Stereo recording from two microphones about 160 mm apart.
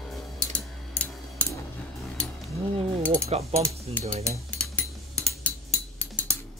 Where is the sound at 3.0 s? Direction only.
10° left (ahead or behind).